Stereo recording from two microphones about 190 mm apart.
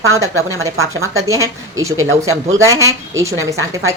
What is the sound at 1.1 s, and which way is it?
Speech, 15° right (ahead or behind).